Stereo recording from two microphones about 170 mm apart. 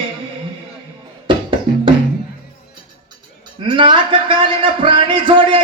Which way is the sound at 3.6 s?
30° right (ahead or behind).